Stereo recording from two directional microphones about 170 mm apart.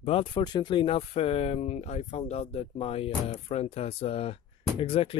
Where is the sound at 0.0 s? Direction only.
30° left (ahead or behind).